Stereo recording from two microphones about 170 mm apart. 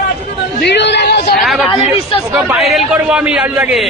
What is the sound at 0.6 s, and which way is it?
Speech, 85° left.